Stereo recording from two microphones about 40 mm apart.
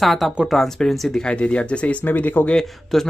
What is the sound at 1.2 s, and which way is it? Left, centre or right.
Speech, left.